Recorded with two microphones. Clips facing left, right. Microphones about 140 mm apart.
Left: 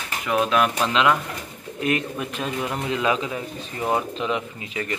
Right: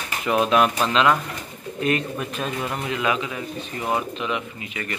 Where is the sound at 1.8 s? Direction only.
10° left (ahead or behind).